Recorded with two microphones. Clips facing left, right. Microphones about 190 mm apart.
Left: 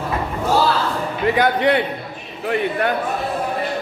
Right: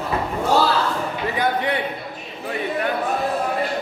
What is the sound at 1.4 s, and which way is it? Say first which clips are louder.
Speech: left 5 dB; 75° left (ahead or behind).